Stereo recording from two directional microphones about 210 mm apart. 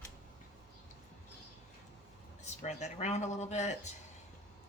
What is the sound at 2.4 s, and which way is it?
Speech, 35° left (ahead or behind).